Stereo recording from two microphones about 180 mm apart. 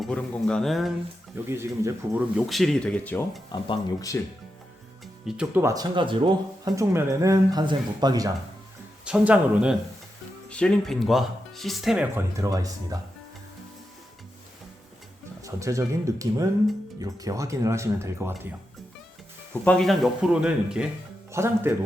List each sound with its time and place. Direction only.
0.0 s speech: 5° left (ahead or behind)
1.5 s speech: 15° right (ahead or behind)
2.5 s speech: centre (ahead or behind)
3.5 s speech: 20° left (ahead or behind)
5.2 s speech: 5° right (ahead or behind)
5.6 s speech: 20° right (ahead or behind)
9.0 s speech: 5° right (ahead or behind)
10.5 s speech: 5° left (ahead or behind)
12.4 s speech: 20° right (ahead or behind)
15.4 s speech: 20° right (ahead or behind)
19.6 s speech: 5° left (ahead or behind); by 21.7 s 15° right (ahead or behind)